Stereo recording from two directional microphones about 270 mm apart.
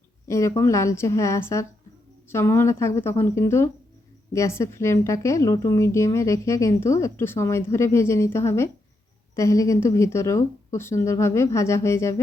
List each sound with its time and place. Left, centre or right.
0.3 s a woman's voice: centre